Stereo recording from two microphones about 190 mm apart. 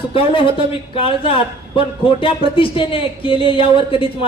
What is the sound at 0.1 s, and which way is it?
A man's voice, 25° left (ahead or behind).